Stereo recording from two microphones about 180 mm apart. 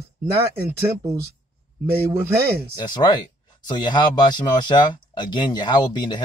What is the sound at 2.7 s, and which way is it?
Speech, 25° left (ahead or behind).